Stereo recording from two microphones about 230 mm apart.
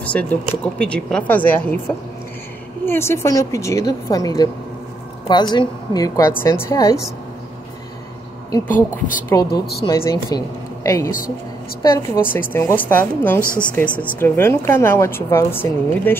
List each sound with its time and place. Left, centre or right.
0.0 s speech: centre
2.8 s a woman's voice: centre
9.3 s a woman's voice: centre